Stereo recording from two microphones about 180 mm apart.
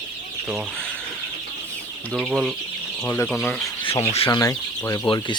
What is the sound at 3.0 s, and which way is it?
Speech, 15° left (ahead or behind).